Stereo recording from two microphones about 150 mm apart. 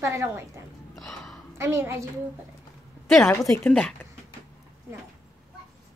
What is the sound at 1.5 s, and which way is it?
Speech, 15° right (ahead or behind).